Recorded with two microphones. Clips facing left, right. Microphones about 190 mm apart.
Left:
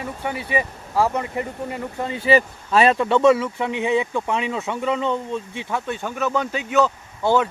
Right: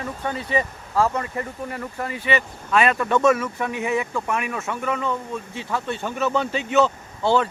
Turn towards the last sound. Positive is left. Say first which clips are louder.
# left 1 dB
turn(degrees=10)  # may be behind; listen again after turning